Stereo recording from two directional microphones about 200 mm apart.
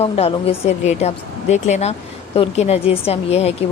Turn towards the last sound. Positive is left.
turn(degrees=30)  # may be behind; listen again after turning